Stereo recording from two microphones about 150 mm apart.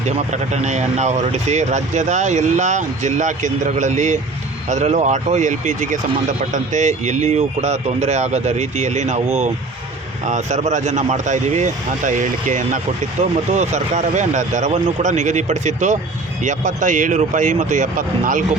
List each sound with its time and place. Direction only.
0.0 s speech: 50° right (ahead or behind)